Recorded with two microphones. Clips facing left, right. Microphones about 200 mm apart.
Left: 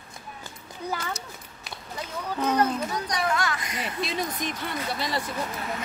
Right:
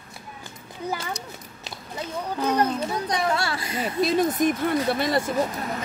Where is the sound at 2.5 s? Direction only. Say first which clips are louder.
Right 1 dB; 25° right (ahead or behind).